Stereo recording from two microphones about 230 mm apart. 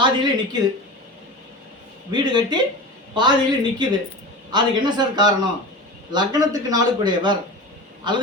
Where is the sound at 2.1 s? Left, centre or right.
Centre.